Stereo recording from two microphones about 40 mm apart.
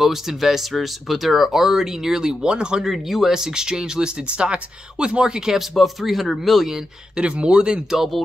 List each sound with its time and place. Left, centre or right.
0.0 s speech: centre; by 2.8 s right
2.8 s speech: centre
5.6 s speech: centre
7.2 s speech: right